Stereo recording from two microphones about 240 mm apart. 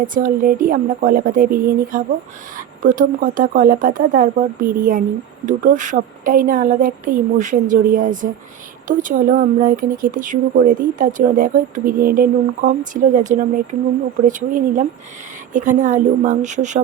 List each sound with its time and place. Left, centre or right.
0.0 s speech: right
14.3 s speech: right